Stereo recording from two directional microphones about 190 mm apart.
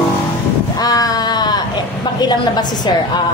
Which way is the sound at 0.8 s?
20° left (ahead or behind).